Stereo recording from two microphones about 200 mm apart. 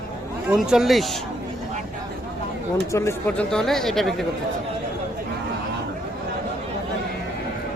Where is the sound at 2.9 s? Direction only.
10° left (ahead or behind).